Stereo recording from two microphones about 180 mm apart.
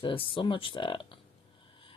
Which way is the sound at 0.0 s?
30° left (ahead or behind).